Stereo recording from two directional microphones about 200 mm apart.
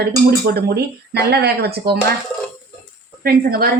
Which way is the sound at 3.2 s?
50° right (ahead or behind).